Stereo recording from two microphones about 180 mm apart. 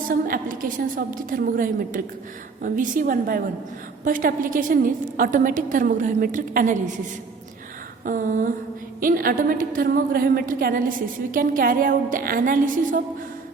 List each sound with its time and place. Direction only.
0.1 s a woman's voice: 50° right (ahead or behind)
8.0 s a woman's voice: 50° right (ahead or behind)